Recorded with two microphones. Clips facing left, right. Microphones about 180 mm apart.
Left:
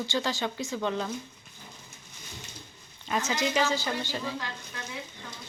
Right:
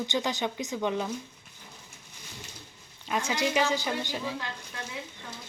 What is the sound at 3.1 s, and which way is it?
Speech, 10° right (ahead or behind).